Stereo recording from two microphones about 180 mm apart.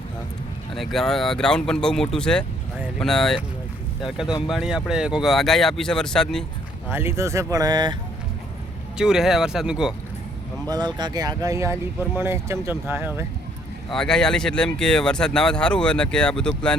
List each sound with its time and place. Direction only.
0.8 s speech: centre (ahead or behind)
4.4 s speech: centre (ahead or behind)
6.9 s speech: 15° right (ahead or behind)
9.0 s speech: 5° right (ahead or behind)
10.7 s speech: 20° right (ahead or behind)
13.9 s speech: 5° left (ahead or behind)